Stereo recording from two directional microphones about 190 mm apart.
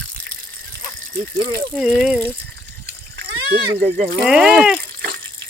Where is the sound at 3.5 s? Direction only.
50° right (ahead or behind).